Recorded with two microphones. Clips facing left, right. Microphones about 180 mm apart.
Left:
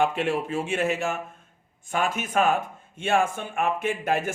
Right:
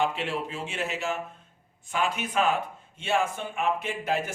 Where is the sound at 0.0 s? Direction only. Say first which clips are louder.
Left 4 dB; 50° left (ahead or behind).